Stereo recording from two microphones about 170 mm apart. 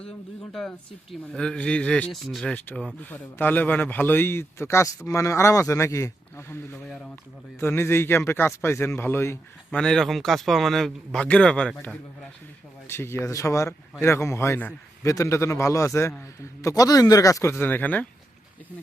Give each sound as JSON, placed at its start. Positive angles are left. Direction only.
{"t": 1.3, "sound": "speech", "side_deg": 5}
{"t": 6.8, "sound": "speech", "side_deg": 0}
{"t": 7.6, "sound": "speech", "side_deg": 15}
{"t": 9.8, "sound": "speech", "side_deg": 0}
{"t": 12.9, "sound": "speech", "side_deg": 15}